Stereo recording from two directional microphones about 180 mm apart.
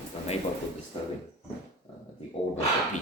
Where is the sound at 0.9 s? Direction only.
30° left (ahead or behind).